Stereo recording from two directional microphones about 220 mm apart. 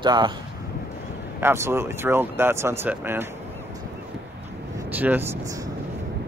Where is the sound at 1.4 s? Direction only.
10° right (ahead or behind).